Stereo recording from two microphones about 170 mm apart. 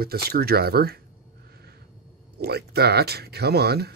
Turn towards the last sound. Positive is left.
turn(degrees=-70)  # may be behind; listen again after turning